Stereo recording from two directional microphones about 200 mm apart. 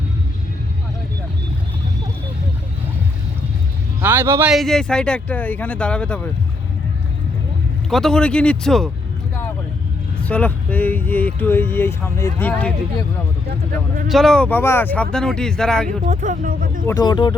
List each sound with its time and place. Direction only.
4.0 s speech: 10° right (ahead or behind)
4.5 s speech: centre (ahead or behind)
7.9 s speech: centre (ahead or behind)
10.2 s speech: 5° left (ahead or behind)
14.1 s speech: centre (ahead or behind)
15.9 s speech: 35° right (ahead or behind)
16.8 s speech: 15° left (ahead or behind)